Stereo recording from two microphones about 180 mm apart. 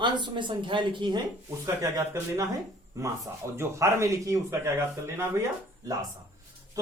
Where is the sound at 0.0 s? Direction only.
25° right (ahead or behind).